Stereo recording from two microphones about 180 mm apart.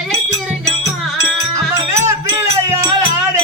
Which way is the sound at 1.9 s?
15° right (ahead or behind).